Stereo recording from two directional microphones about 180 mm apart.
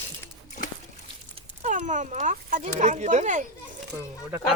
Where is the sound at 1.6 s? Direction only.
40° right (ahead or behind).